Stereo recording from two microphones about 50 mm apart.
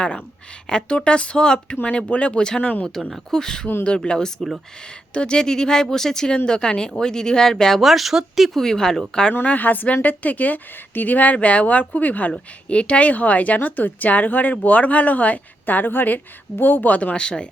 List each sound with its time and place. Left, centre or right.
0.7 s speech: centre
3.3 s speech: centre
7.8 s speech: centre
8.6 s speech: centre
9.3 s a woman's voice: left
17.2 s speech: centre